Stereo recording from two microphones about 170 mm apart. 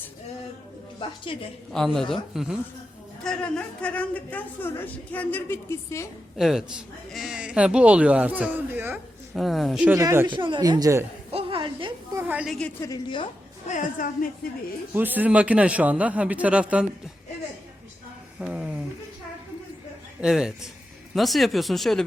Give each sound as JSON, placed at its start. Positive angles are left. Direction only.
{"t": 0.9, "sound": "a woman's voice", "side_deg": 30}
{"t": 1.7, "sound": "a man's voice", "side_deg": 0}
{"t": 6.3, "sound": "speech", "side_deg": 0}
{"t": 9.3, "sound": "speech", "side_deg": 0}
{"t": 10.0, "sound": "speech", "side_deg": -15}
{"t": 10.2, "sound": "speech", "side_deg": -30}
{"t": 11.3, "sound": "a sound", "side_deg": -35}
{"t": 12.1, "sound": "speech", "side_deg": -10}
{"t": 12.8, "sound": "a woman's voice", "side_deg": 25}
{"t": 13.7, "sound": "a woman's voice", "side_deg": 50}
{"t": 14.9, "sound": "speech", "side_deg": -10}
{"t": 18.3, "sound": "speech", "side_deg": -5}
{"t": 20.2, "sound": "speech", "side_deg": -5}